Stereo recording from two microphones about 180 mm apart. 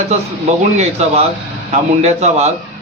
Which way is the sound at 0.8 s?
35° right (ahead or behind).